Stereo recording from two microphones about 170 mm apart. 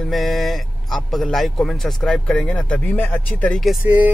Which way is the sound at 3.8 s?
10° right (ahead or behind).